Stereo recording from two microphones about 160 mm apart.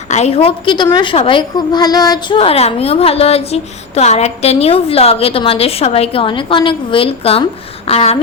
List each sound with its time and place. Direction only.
0.1 s a woman's voice: 40° left (ahead or behind)